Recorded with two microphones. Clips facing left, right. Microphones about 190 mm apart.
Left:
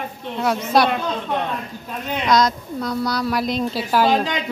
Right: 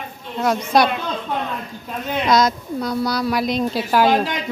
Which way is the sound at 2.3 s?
5° right (ahead or behind).